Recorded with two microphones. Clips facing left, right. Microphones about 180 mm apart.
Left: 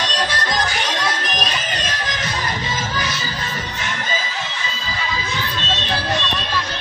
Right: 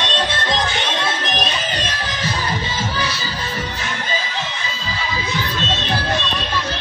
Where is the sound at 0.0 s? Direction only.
25° right (ahead or behind).